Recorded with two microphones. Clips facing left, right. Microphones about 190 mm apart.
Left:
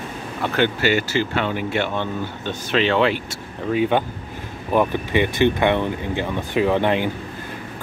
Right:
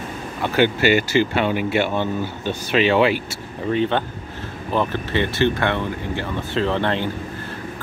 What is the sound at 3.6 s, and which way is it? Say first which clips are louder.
Speech: left 1 dB; 10° left (ahead or behind).